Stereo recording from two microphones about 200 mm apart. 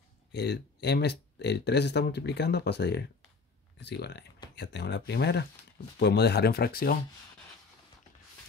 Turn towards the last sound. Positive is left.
turn(degrees=50)  # may be behind; listen again after turning